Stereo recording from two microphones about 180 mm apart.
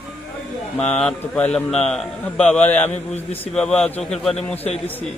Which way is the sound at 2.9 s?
35° left (ahead or behind).